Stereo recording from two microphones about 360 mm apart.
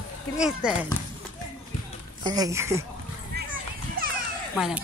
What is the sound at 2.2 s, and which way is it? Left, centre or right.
Speech, centre.